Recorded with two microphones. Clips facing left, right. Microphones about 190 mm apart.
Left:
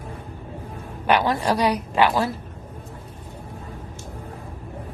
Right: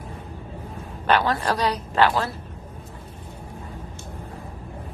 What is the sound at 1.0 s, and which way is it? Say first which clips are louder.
A woman's voice: left 1 dB; 15° left (ahead or behind).